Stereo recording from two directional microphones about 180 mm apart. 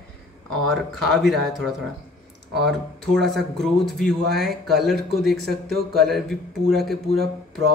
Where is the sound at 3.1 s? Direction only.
Centre (ahead or behind).